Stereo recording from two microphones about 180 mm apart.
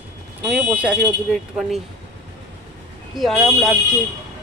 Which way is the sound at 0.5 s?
10° right (ahead or behind).